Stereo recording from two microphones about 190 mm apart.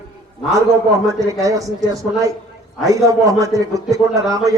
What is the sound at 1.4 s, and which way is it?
A man's voice, 15° right (ahead or behind).